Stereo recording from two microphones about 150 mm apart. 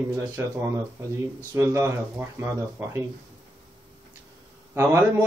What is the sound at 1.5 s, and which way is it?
Speech, 20° right (ahead or behind).